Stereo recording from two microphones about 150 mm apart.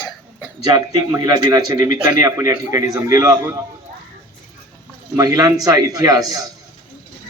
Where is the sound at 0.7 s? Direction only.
25° right (ahead or behind).